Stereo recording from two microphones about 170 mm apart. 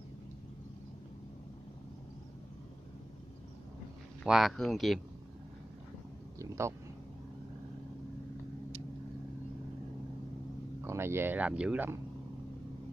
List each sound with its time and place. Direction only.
4.2 s speech: centre (ahead or behind)
6.4 s speech: 15° right (ahead or behind)
10.8 s speech: 15° right (ahead or behind)